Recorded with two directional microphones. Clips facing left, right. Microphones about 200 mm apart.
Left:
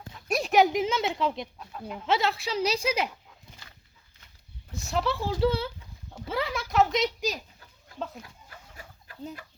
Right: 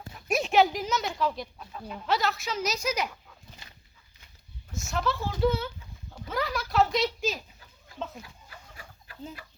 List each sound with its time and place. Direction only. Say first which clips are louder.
0.3 s a sound: right 1 dB; 5° right (ahead or behind)
0.5 s speech: left 2 dB; 15° left (ahead or behind)
4.7 s speech: left 2 dB; 35° left (ahead or behind); by 7.3 s 15° left (ahead or behind)